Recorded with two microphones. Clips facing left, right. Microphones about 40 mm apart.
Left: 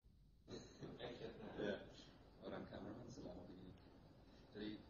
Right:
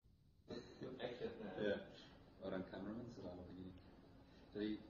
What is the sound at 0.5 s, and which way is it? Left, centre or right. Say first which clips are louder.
Chuckle: right 4 dB; centre.